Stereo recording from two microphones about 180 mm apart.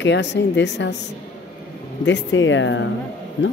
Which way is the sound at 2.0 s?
90° left.